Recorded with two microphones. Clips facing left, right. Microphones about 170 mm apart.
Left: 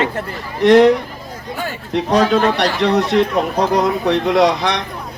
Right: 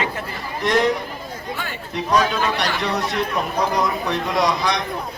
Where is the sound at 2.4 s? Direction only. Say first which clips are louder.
Left 7 dB; 65° left (ahead or behind).